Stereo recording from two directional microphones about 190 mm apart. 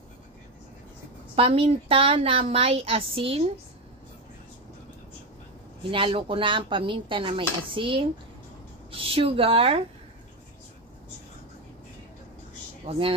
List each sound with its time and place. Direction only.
1.3 s speech: 30° right (ahead or behind)
5.9 s speech: 25° right (ahead or behind)
12.9 s speech: 30° right (ahead or behind)